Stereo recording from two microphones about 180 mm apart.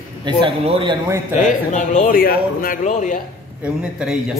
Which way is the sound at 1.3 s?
45° left (ahead or behind).